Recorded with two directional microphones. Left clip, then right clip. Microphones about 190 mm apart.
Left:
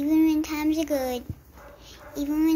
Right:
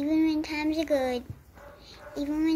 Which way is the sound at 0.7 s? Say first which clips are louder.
Even; 5° right (ahead or behind).